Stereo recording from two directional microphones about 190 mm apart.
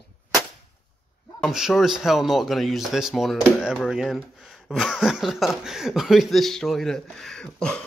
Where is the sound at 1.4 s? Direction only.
Centre (ahead or behind).